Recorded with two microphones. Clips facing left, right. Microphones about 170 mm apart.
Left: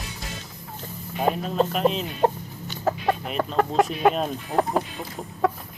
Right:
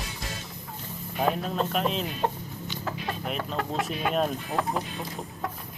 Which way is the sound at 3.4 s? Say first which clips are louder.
Left 7 dB; 50° left (ahead or behind).